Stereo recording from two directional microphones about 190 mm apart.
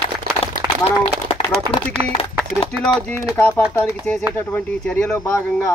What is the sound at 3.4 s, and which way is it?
Speech, 10° left (ahead or behind).